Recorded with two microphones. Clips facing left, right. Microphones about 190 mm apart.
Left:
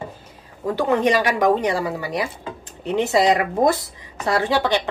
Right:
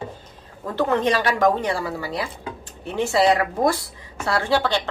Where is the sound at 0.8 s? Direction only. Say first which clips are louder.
Left 2 dB; 15° left (ahead or behind).